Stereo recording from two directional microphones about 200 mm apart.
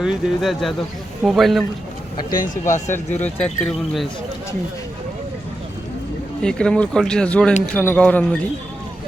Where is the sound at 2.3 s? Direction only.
45° left (ahead or behind).